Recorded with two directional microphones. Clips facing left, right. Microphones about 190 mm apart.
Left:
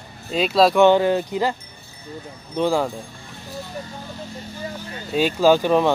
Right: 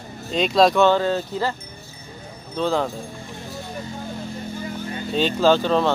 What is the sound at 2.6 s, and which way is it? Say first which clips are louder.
Speech: left 2 dB; 10° left (ahead or behind).